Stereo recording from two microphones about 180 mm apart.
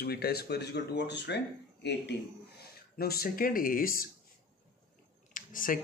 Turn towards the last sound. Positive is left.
turn(degrees=50)  # may be behind; listen again after turning